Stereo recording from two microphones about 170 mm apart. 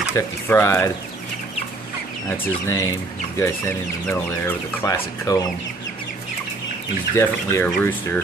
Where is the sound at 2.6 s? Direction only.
20° left (ahead or behind).